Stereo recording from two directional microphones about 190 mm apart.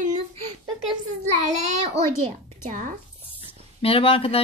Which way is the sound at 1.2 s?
40° right (ahead or behind).